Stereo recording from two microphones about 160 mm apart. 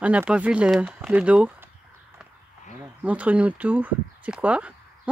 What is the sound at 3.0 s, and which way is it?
Speech, 10° right (ahead or behind).